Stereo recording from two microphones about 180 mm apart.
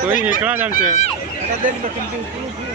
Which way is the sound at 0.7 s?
45° left (ahead or behind).